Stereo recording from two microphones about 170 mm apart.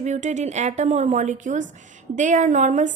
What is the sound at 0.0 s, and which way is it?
A woman's voice, 45° right (ahead or behind).